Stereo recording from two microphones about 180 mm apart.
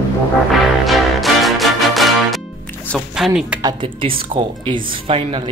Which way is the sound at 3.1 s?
5° right (ahead or behind).